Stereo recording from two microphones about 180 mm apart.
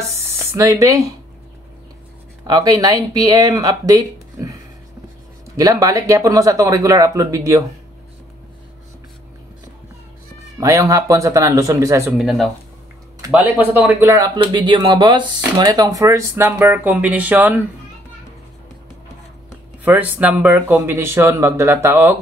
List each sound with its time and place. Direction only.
0.1 s speech: 15° right (ahead or behind)
2.4 s speech: 20° right (ahead or behind)
5.6 s speech: 20° right (ahead or behind)
10.6 s speech: 15° right (ahead or behind)
12.2 s speech: centre (ahead or behind)
19.8 s speech: 10° right (ahead or behind)